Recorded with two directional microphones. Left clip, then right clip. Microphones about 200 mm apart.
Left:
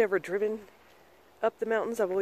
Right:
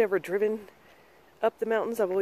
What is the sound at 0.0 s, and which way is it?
Speech, 5° right (ahead or behind).